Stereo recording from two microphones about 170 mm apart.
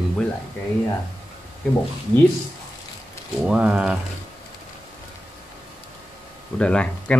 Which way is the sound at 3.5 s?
5° right (ahead or behind).